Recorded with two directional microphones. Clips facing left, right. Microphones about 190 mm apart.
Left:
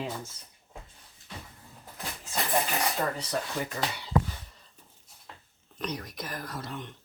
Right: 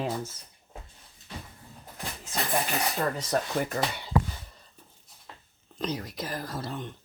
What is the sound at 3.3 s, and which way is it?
Speech, 50° right (ahead or behind).